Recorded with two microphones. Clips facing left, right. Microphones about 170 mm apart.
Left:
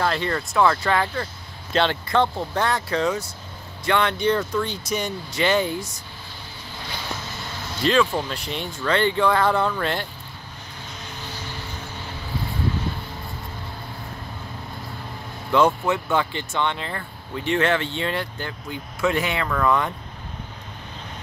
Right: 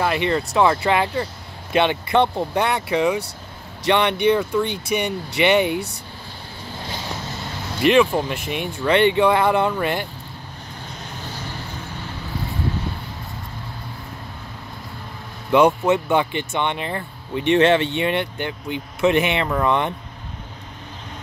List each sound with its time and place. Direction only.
0.0 s speech: 15° right (ahead or behind)
4.6 s speech: 60° right (ahead or behind)
5.4 s speech: 15° right (ahead or behind)
7.8 s speech: 15° right (ahead or behind)
15.5 s speech: 20° right (ahead or behind)